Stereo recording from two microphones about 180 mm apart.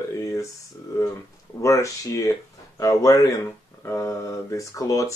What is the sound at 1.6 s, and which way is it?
Speech, 15° left (ahead or behind).